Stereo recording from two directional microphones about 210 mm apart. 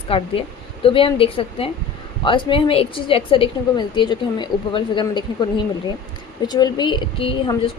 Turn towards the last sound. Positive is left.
turn(degrees=25)  # may be behind; listen again after turning